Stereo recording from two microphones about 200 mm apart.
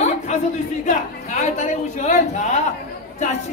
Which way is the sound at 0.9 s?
40° left (ahead or behind).